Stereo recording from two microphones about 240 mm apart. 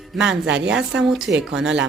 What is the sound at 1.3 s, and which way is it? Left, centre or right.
Speech, right.